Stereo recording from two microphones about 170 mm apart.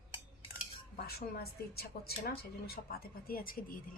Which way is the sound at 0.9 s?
65° left (ahead or behind).